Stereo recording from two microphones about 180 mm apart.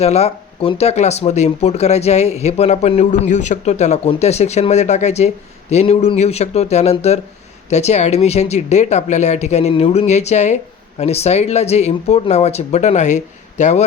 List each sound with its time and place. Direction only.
0.0 s speech: 35° left (ahead or behind)